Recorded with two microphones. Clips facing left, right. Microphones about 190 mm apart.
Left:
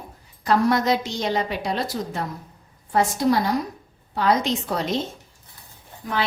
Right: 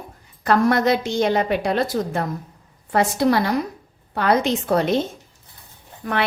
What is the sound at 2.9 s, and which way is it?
A woman's voice, 70° right (ahead or behind).